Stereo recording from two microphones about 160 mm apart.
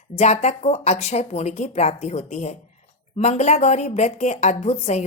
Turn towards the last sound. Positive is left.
turn(degrees=45)  # may be behind; listen again after turning